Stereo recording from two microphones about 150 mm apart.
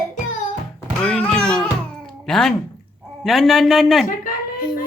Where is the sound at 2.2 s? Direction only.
5° left (ahead or behind).